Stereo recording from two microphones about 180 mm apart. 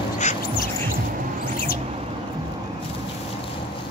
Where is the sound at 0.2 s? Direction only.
40° left (ahead or behind).